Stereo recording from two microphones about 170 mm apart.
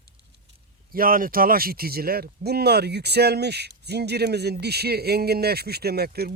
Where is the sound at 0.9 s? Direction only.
55° right (ahead or behind).